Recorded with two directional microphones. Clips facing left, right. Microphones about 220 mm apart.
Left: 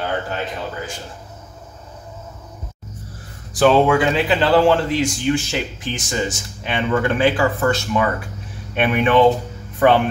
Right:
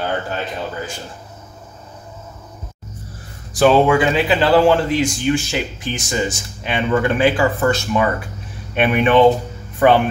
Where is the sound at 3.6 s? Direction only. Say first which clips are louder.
Right 1 dB; 5° right (ahead or behind).